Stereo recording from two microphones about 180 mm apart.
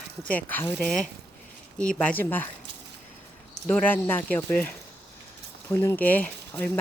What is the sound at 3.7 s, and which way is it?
Speech, 10° left (ahead or behind).